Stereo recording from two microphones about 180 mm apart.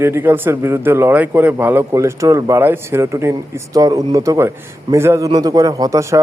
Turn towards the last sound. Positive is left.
turn(degrees=-15)  # may be behind; listen again after turning